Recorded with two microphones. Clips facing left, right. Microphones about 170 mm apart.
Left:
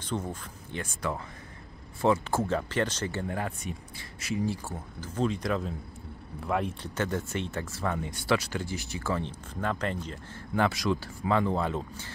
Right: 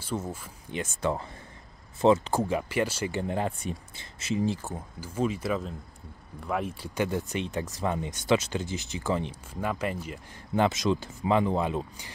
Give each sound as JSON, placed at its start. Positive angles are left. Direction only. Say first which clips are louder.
{"t": 0.0, "sound": "speech", "louder": "even", "side_deg": -5}
{"t": 10.5, "sound": "speech", "louder": "right 2 dB", "side_deg": -20}